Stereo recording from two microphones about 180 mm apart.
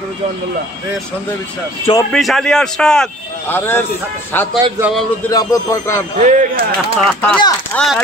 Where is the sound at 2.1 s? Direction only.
Centre (ahead or behind).